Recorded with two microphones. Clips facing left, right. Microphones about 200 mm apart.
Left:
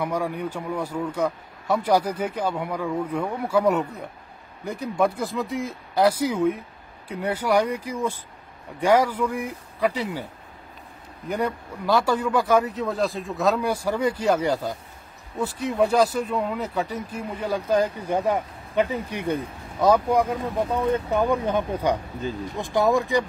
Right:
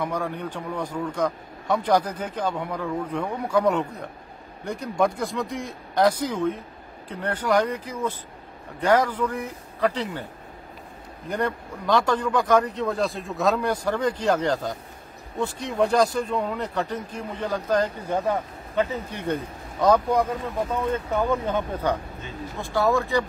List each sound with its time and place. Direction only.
0.0 s speech: 10° left (ahead or behind)
11.2 s speech: 5° left (ahead or behind)